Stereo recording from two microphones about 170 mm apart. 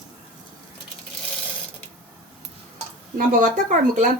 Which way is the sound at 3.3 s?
50° right (ahead or behind).